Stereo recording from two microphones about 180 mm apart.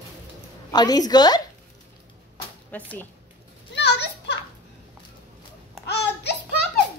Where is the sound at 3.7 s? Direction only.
70° left (ahead or behind).